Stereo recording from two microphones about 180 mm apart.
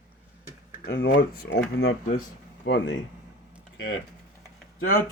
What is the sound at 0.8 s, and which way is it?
Speech, 70° left (ahead or behind).